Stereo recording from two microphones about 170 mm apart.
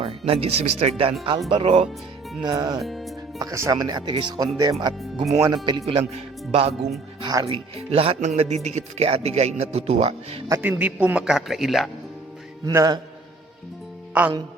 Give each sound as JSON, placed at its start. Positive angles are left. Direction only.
{"t": 0.0, "sound": "speech", "side_deg": -35}
{"t": 2.8, "sound": "speech", "side_deg": 0}
{"t": 3.3, "sound": "speech", "side_deg": -20}
{"t": 7.2, "sound": "speech", "side_deg": -20}
{"t": 7.4, "sound": "speech", "side_deg": -35}
{"t": 10.5, "sound": "a man's voice", "side_deg": -10}
{"t": 12.6, "sound": "speech", "side_deg": -20}
{"t": 14.1, "sound": "speech", "side_deg": -10}